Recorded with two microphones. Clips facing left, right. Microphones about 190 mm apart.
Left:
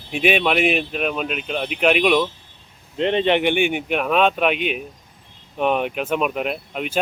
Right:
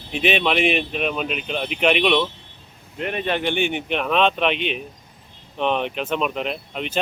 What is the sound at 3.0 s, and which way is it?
Speech, 25° left (ahead or behind).